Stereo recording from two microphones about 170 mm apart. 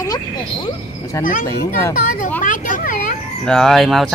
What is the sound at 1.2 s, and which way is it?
Speech, 50° left (ahead or behind).